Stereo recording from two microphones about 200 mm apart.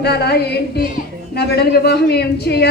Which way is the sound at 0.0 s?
55° left (ahead or behind).